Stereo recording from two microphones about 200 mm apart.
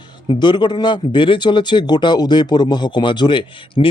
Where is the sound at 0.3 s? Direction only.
20° left (ahead or behind).